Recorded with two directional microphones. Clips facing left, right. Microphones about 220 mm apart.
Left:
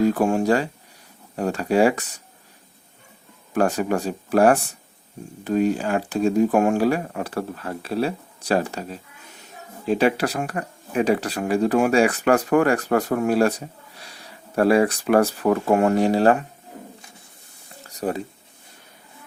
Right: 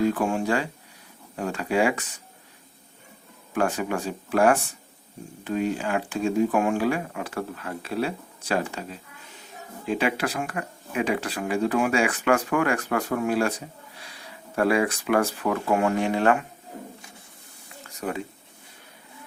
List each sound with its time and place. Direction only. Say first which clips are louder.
0.1 s speech: left 5 dB; 40° left (ahead or behind)
3.5 s speech: left 4 dB; 40° left (ahead or behind)
14.5 s speech: left 5 dB; 35° left (ahead or behind)
17.8 s a sound: left 4 dB; 35° left (ahead or behind)